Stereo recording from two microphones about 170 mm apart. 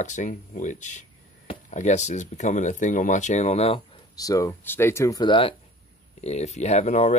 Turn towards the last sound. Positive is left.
turn(degrees=45)  # may be behind; listen again after turning